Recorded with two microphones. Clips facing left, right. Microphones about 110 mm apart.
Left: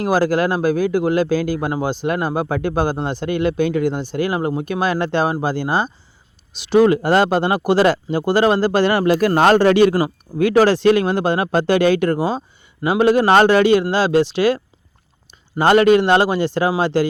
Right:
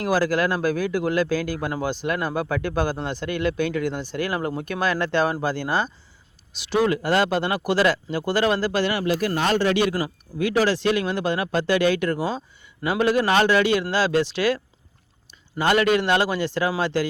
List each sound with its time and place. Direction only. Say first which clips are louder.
0.0 s speech: left 4 dB; 25° left (ahead or behind); by 9.6 s 55° left (ahead or behind)
9.6 s speech: left 8 dB; 35° left (ahead or behind); by 14.6 s 20° left (ahead or behind)
15.5 s speech: left 7 dB; 30° left (ahead or behind)